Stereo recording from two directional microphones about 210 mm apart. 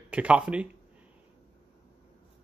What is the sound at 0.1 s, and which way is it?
Speech, 5° right (ahead or behind).